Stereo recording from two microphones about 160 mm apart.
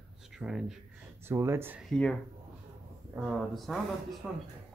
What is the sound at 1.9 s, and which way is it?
Speech, 5° left (ahead or behind).